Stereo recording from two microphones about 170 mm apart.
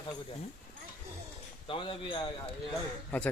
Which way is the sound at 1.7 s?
30° left (ahead or behind).